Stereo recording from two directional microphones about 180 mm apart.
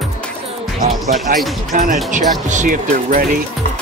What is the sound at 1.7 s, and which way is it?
Speech, 50° right (ahead or behind).